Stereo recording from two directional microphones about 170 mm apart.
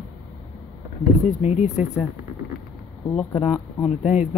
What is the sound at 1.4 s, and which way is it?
Speech, 40° left (ahead or behind).